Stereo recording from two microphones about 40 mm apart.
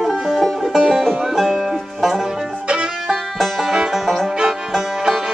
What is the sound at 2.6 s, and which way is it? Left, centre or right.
Music, right.